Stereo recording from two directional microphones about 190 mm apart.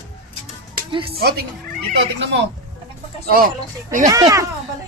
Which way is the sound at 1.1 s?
55° right (ahead or behind).